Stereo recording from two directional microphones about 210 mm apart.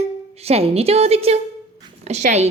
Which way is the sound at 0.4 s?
30° right (ahead or behind).